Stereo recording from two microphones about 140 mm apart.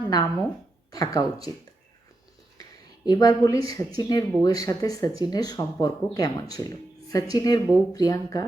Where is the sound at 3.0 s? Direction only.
30° left (ahead or behind).